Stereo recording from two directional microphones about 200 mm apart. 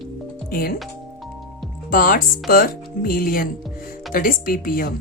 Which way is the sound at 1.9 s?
45° left (ahead or behind).